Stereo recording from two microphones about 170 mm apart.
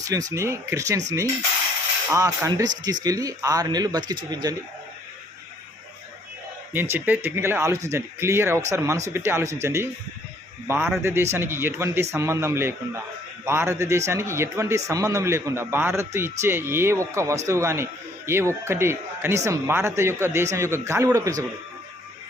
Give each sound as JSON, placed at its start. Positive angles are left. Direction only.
{"t": 0.0, "sound": "speech", "side_deg": -20}
{"t": 2.0, "sound": "speech", "side_deg": -20}
{"t": 6.9, "sound": "a man's voice", "side_deg": -10}